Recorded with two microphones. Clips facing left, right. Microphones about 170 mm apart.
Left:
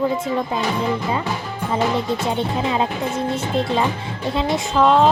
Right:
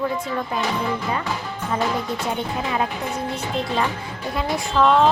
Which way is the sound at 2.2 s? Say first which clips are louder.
Left 4 dB; 25° left (ahead or behind).